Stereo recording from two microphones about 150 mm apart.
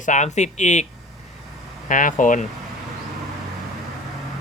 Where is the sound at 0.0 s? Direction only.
55° left (ahead or behind).